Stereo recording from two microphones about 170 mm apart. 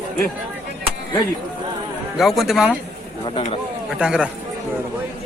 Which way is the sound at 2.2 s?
Centre (ahead or behind).